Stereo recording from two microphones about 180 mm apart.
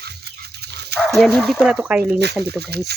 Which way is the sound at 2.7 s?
65° right (ahead or behind).